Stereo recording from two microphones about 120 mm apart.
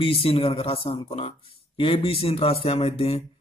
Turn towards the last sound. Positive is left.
turn(degrees=55)  # may be behind; listen again after turning